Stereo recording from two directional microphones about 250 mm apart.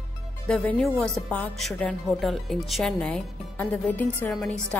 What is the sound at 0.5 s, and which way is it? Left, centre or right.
Speech, centre.